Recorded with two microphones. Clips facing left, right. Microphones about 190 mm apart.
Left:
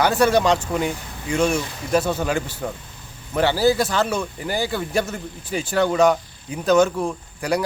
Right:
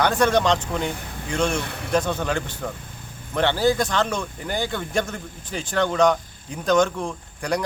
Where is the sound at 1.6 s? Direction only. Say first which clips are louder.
Even; 60° right (ahead or behind).